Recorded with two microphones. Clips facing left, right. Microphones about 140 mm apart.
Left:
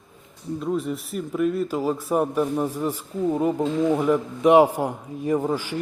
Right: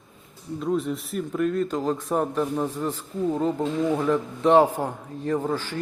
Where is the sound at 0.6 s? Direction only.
Centre (ahead or behind).